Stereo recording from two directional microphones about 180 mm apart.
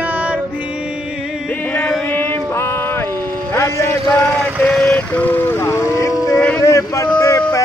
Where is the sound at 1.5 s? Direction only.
10° left (ahead or behind).